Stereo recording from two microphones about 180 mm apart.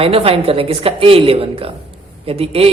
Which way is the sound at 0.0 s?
30° right (ahead or behind).